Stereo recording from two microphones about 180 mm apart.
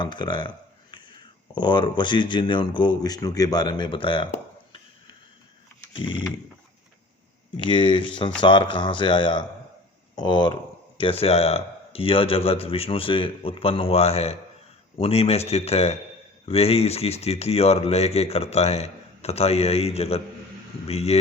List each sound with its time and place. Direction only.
0.0 s speech: 25° left (ahead or behind)
5.9 s speech: 25° left (ahead or behind)
7.6 s speech: 25° left (ahead or behind)